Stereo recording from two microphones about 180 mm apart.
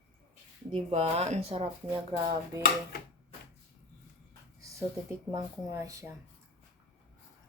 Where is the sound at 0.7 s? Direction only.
35° right (ahead or behind).